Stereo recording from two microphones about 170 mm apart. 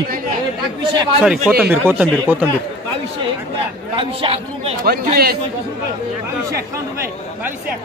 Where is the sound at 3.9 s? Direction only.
30° right (ahead or behind).